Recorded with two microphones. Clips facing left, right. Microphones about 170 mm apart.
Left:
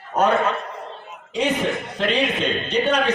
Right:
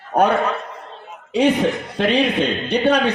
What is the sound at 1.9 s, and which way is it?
Speech, 65° right (ahead or behind).